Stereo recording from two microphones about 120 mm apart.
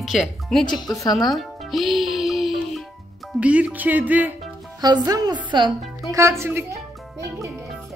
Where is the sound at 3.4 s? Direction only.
10° right (ahead or behind).